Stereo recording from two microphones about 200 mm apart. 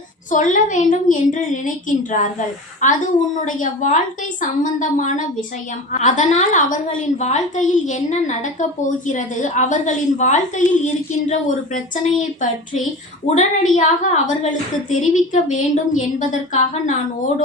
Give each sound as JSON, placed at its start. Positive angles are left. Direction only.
{"t": 0.3, "sound": "a woman's voice", "side_deg": 40}